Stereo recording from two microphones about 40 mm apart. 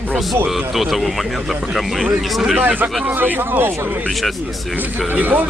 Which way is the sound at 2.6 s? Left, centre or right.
Right.